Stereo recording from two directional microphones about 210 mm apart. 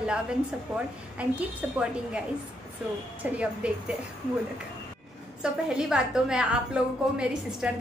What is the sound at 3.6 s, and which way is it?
Speech, 5° right (ahead or behind).